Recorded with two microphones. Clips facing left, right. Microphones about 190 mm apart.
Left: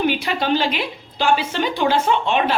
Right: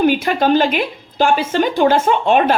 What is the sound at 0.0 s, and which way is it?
A woman's voice, 45° right (ahead or behind).